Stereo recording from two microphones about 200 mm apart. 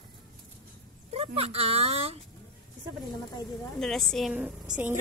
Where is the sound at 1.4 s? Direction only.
30° right (ahead or behind).